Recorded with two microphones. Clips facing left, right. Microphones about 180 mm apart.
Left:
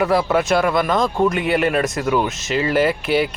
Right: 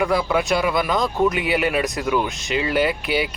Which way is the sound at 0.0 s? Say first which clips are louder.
Left 3 dB; 5° left (ahead or behind).